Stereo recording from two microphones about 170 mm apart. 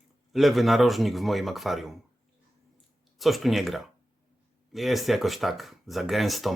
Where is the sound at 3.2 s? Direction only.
Centre (ahead or behind).